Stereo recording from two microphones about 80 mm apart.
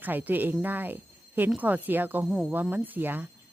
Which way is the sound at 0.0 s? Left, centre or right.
Right.